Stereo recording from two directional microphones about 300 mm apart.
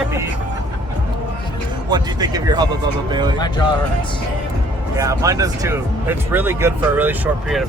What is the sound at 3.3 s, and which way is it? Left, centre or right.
Speech, centre.